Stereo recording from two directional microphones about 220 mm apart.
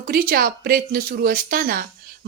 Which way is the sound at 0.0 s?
40° right (ahead or behind).